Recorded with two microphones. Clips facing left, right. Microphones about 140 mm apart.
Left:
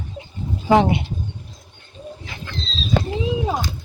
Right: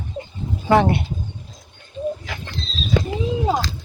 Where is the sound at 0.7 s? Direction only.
15° left (ahead or behind).